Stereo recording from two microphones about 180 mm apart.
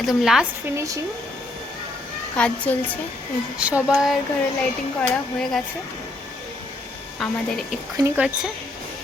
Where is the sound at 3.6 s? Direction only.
5° right (ahead or behind).